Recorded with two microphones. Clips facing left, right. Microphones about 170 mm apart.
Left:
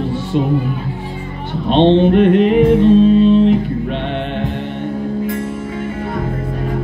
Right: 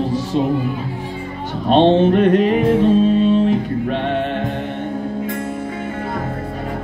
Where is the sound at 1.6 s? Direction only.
40° right (ahead or behind).